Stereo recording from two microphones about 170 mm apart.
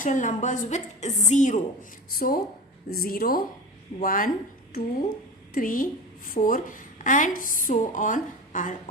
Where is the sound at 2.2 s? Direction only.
55° left (ahead or behind).